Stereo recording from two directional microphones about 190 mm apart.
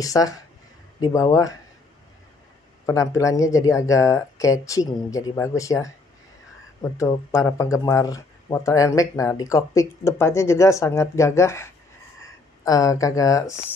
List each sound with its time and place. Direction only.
0.0 s a man's voice: 20° left (ahead or behind)
2.9 s a man's voice: 15° left (ahead or behind)